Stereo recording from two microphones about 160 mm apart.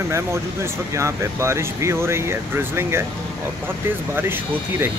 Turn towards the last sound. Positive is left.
turn(degrees=-15)  # may be behind; listen again after turning